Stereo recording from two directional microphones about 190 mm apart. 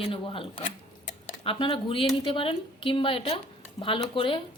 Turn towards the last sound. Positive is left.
turn(degrees=25)  # may be behind; listen again after turning